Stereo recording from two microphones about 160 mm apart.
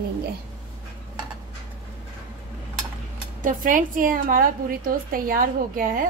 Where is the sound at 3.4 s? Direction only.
55° right (ahead or behind).